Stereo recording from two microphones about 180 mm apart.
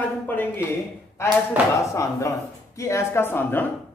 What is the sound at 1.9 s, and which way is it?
Speech, 15° left (ahead or behind).